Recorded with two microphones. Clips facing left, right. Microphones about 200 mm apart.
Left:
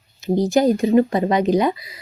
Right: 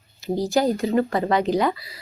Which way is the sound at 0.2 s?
20° left (ahead or behind).